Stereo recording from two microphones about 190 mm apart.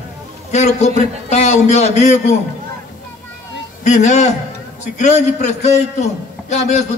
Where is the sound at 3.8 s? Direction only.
40° left (ahead or behind).